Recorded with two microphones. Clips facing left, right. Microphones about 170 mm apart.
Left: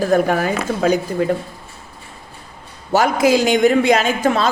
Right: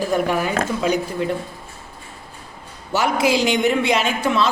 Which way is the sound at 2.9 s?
45° left (ahead or behind).